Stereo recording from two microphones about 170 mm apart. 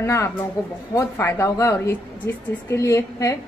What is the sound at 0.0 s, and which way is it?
A woman's voice, 15° left (ahead or behind).